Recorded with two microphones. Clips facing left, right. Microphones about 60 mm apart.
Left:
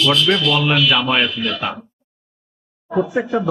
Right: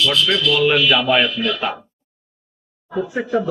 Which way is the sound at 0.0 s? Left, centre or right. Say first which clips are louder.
Left 2 dB; left.